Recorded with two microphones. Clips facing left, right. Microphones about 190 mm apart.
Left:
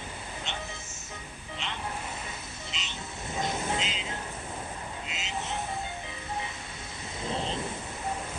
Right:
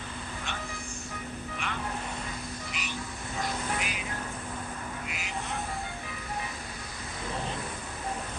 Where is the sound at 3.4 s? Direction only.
20° left (ahead or behind).